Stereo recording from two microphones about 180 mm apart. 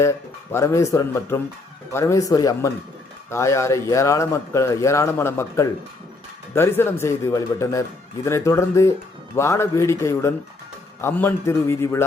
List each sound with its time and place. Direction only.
0.0 s speech: 15° left (ahead or behind)